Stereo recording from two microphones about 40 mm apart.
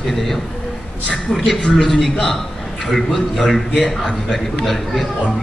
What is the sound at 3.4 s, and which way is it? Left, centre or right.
A man's voice, centre.